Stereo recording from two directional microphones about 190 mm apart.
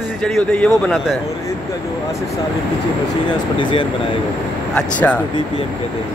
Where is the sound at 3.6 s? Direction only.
25° left (ahead or behind).